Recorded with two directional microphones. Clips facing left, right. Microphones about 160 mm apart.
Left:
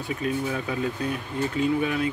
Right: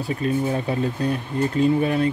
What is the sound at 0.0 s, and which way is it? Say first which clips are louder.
Speech: right 5 dB; 35° right (ahead or behind).